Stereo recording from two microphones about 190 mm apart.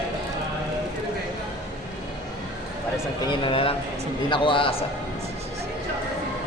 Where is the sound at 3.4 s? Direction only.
30° left (ahead or behind).